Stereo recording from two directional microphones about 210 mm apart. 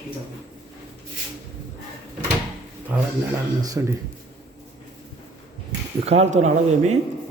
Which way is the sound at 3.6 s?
15° right (ahead or behind).